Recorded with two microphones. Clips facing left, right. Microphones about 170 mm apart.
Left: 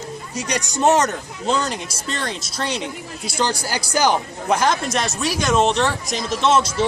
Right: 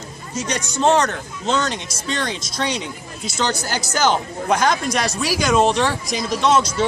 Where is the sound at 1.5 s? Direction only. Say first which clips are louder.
Even; 5° left (ahead or behind).